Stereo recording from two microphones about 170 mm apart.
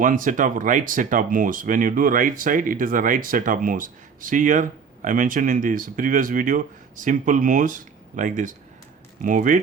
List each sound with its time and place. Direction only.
0.0 s speech: 50° right (ahead or behind)